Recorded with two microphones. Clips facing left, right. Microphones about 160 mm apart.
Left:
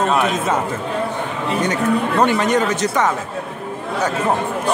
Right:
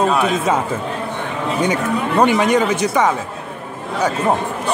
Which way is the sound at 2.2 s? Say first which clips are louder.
Right 4 dB; 10° right (ahead or behind).